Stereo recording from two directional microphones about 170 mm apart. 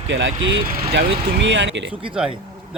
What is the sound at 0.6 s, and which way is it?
Speech, 65° right (ahead or behind).